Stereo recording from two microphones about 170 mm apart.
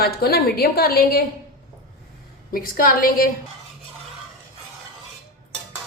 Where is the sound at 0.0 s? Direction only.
65° left (ahead or behind).